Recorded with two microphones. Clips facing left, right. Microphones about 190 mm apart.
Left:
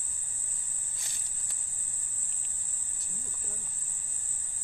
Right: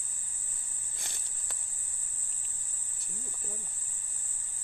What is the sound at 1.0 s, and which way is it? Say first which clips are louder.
Cricket: right 5 dB; 65° right (ahead or behind).